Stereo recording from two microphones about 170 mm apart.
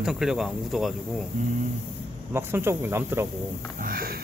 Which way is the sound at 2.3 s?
15° right (ahead or behind).